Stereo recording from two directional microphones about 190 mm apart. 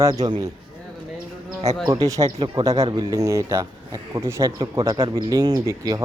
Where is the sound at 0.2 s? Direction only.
20° right (ahead or behind).